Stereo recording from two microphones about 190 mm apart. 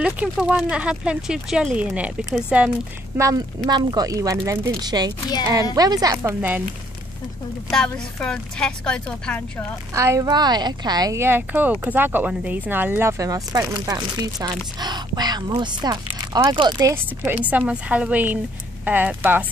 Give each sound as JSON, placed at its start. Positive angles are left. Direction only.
{"t": 0.0, "sound": "speech", "side_deg": -5}
{"t": 3.2, "sound": "speech", "side_deg": -20}
{"t": 7.7, "sound": "speech", "side_deg": 5}
{"t": 9.9, "sound": "speech", "side_deg": -15}